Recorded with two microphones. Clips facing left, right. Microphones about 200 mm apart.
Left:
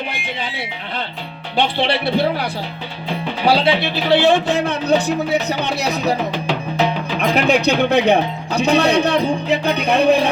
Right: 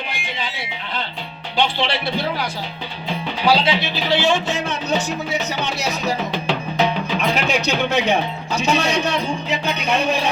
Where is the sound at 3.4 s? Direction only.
60° left (ahead or behind).